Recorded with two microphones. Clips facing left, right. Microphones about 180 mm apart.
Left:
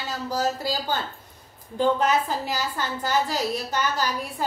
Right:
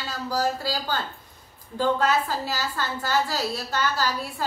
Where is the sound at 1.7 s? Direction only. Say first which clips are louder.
Left 1 dB; 20° left (ahead or behind).